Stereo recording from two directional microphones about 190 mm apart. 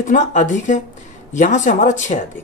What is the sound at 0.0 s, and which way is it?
Speech, 40° left (ahead or behind).